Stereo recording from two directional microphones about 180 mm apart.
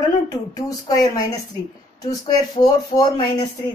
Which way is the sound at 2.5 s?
20° left (ahead or behind).